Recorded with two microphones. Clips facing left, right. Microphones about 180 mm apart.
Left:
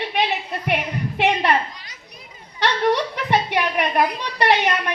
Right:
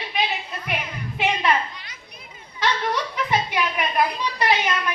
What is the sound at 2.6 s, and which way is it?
A woman's voice, 70° left (ahead or behind).